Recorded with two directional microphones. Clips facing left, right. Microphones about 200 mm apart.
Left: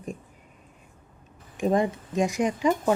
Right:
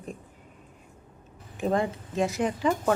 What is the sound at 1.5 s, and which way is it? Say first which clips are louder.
Speech: left 3 dB; 15° left (ahead or behind).